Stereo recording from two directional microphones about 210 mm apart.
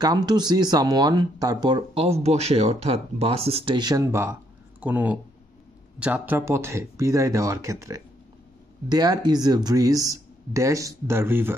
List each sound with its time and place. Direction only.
0.0 s speech: 20° right (ahead or behind)